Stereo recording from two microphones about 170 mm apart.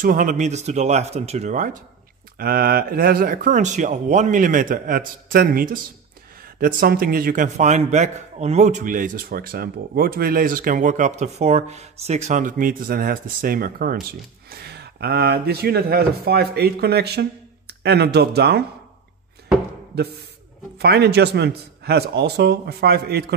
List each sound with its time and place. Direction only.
0.0 s speech: 50° right (ahead or behind)
2.3 s a man's voice: 60° right (ahead or behind)
14.5 s speech: 70° right (ahead or behind)
20.7 s a man's voice: 75° right (ahead or behind)